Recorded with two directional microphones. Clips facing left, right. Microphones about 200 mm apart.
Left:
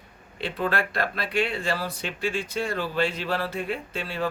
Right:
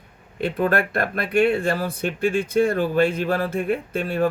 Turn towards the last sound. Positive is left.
turn(degrees=-50)  # may be behind; listen again after turning